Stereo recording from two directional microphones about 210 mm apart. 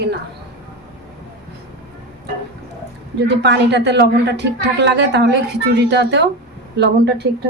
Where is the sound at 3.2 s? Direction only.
55° right (ahead or behind).